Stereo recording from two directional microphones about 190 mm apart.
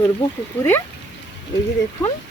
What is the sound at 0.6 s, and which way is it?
Speech, 10° left (ahead or behind).